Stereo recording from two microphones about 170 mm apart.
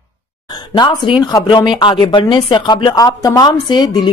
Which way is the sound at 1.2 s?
25° left (ahead or behind).